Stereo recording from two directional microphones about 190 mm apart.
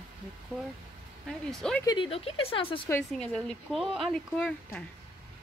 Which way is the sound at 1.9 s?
30° left (ahead or behind).